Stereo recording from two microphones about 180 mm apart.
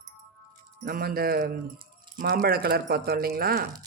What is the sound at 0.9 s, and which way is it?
Speech, 55° right (ahead or behind).